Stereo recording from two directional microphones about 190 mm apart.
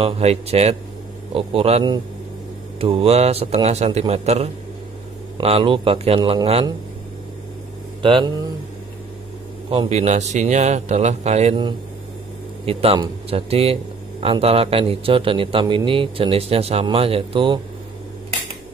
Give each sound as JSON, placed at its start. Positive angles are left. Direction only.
{"t": 0.0, "sound": "a man's voice", "side_deg": -35}
{"t": 8.0, "sound": "speech", "side_deg": -25}
{"t": 9.7, "sound": "a man's voice", "side_deg": -30}
{"t": 12.6, "sound": "a man's voice", "side_deg": -30}